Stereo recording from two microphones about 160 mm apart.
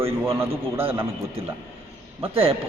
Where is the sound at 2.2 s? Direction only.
35° right (ahead or behind).